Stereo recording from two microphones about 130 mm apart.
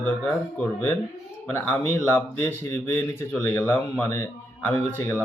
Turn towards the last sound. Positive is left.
turn(degrees=15)  # may be behind; listen again after turning